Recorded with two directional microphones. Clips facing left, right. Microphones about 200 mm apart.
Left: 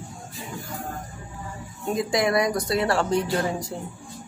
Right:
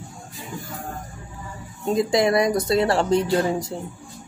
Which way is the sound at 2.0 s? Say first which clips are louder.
Right 2 dB; 25° right (ahead or behind).